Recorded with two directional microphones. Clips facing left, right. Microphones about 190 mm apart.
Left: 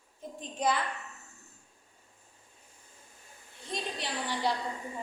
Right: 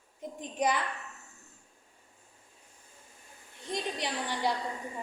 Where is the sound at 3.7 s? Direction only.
20° right (ahead or behind).